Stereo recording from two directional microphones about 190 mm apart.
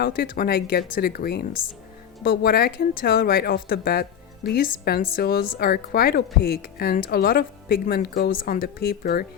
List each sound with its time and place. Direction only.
0.0 s speech: 50° left (ahead or behind)